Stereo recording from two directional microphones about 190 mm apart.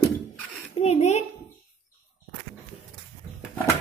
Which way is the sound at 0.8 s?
35° left (ahead or behind).